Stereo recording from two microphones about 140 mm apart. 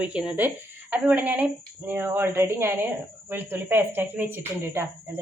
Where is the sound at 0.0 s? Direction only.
5° right (ahead or behind).